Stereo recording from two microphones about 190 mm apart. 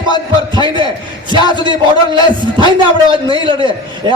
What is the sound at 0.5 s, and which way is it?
Speech, 25° right (ahead or behind).